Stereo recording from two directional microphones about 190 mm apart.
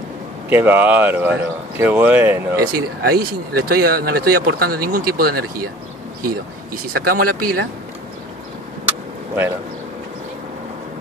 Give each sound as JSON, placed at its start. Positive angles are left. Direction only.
{"t": 0.5, "sound": "speech", "side_deg": -10}
{"t": 2.6, "sound": "speech", "side_deg": -55}